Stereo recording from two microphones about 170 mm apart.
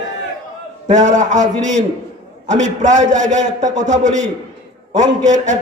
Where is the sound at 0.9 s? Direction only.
45° right (ahead or behind).